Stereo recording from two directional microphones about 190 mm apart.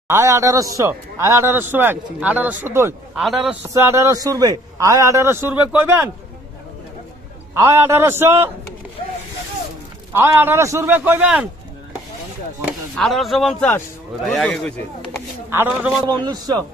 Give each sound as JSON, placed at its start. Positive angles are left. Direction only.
{"t": 0.1, "sound": "a man's voice", "side_deg": -15}
{"t": 3.2, "sound": "speech", "side_deg": 0}
{"t": 3.7, "sound": "a man's voice", "side_deg": -15}
{"t": 7.5, "sound": "a man's voice", "side_deg": -15}
{"t": 10.1, "sound": "a man's voice", "side_deg": -10}
{"t": 12.9, "sound": "speech", "side_deg": 0}
{"t": 15.5, "sound": "a man's voice", "side_deg": -10}
{"t": 16.1, "sound": "a man's voice", "side_deg": -20}